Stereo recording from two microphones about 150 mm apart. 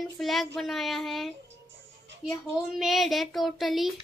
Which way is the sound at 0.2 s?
Centre (ahead or behind).